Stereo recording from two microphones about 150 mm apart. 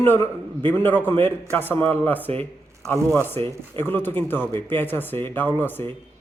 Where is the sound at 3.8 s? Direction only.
15° left (ahead or behind).